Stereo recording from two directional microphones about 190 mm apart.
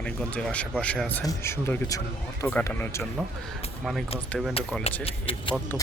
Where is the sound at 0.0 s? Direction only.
5° left (ahead or behind).